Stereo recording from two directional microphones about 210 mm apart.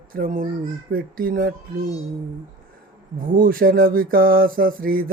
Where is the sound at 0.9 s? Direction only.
40° right (ahead or behind).